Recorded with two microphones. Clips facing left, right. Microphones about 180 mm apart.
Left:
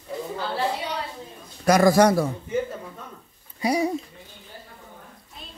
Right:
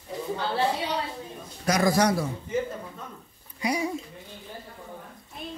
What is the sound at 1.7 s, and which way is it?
Speech, 55° left (ahead or behind).